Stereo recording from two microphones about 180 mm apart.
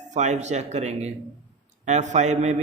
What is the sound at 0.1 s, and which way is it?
A man's voice, 40° right (ahead or behind).